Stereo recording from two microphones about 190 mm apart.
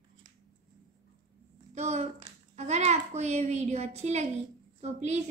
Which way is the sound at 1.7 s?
35° right (ahead or behind).